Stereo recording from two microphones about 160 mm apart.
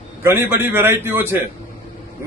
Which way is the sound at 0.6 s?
15° right (ahead or behind).